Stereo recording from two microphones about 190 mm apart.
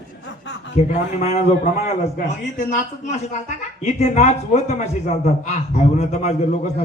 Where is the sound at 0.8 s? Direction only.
35° left (ahead or behind).